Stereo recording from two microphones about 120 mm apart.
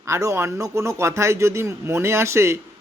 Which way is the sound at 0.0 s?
25° right (ahead or behind).